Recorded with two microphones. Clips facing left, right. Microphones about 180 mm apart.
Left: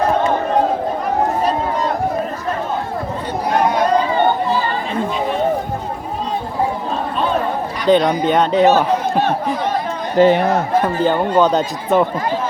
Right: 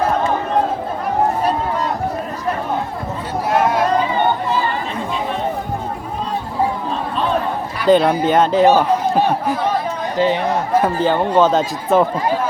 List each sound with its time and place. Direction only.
3.5 s a sound: 5° right (ahead or behind)
7.9 s speech: 5° right (ahead or behind)
10.2 s speech: 50° left (ahead or behind)
10.8 s speech: centre (ahead or behind)